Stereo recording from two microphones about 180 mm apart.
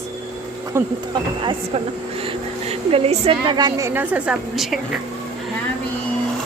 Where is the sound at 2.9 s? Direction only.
35° right (ahead or behind).